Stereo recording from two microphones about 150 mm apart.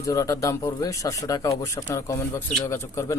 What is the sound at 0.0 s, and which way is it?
Speech, 20° left (ahead or behind).